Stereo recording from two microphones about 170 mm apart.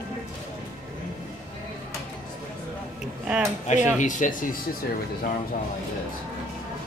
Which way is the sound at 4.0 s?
50° left (ahead or behind).